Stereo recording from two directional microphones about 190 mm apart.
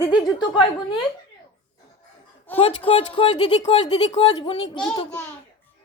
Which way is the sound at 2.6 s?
30° left (ahead or behind).